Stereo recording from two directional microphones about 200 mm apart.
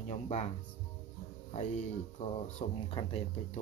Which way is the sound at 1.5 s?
35° left (ahead or behind).